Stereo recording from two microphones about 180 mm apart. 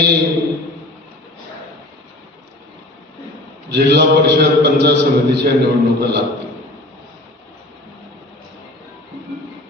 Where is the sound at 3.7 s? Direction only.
70° right (ahead or behind).